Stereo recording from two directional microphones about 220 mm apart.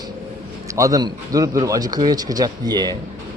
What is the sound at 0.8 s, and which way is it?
Speech, 15° right (ahead or behind).